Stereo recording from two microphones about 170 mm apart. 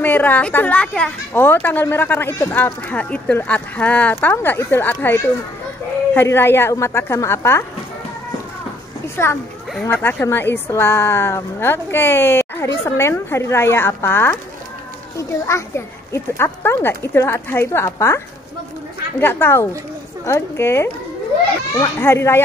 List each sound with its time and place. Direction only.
0.0 s a woman's voice: 10° left (ahead or behind)
9.0 s a child's voice: 15° left (ahead or behind)